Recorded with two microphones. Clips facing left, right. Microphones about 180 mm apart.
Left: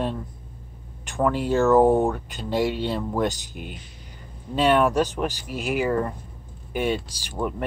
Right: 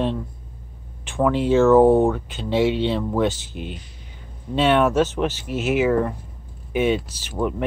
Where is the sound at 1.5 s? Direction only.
Centre (ahead or behind).